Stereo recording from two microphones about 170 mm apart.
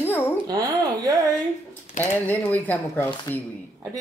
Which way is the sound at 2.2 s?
10° left (ahead or behind).